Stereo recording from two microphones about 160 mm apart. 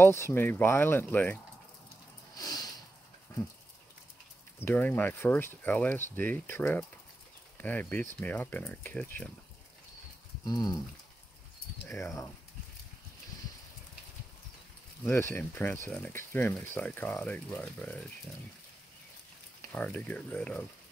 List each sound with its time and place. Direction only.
0.0 s speech: 15° left (ahead or behind)
2.3 s sniff: 25° left (ahead or behind)
4.6 s speech: 10° left (ahead or behind)
10.4 s speech: 25° left (ahead or behind)
15.0 s speech: 15° left (ahead or behind)
19.7 s speech: 10° left (ahead or behind)